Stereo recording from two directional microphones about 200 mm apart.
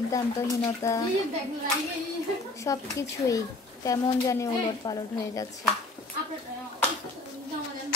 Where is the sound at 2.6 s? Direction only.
15° left (ahead or behind).